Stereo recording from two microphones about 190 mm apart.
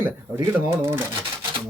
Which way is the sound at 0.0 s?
10° right (ahead or behind).